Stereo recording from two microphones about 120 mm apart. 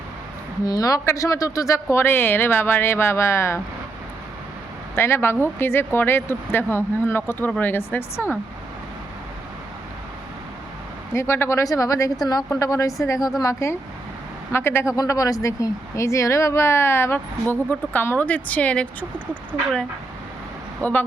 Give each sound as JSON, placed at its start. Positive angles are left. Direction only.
{"t": 0.6, "sound": "speech", "side_deg": 30}
{"t": 4.9, "sound": "speech", "side_deg": 20}
{"t": 11.1, "sound": "speech", "side_deg": 20}
{"t": 20.8, "sound": "a woman's voice", "side_deg": 15}